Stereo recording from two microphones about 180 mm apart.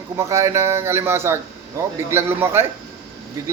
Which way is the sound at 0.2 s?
15° right (ahead or behind).